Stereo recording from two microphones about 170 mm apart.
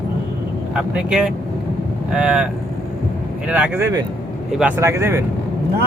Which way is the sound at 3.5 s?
10° right (ahead or behind).